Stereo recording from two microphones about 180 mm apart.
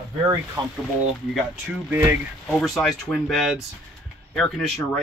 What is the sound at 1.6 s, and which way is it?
Speech, 10° right (ahead or behind).